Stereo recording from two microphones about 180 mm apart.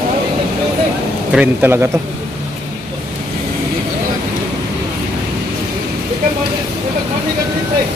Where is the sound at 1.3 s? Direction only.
10° right (ahead or behind).